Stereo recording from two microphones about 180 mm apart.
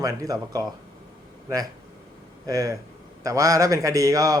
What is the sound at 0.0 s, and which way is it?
Speech, 20° right (ahead or behind).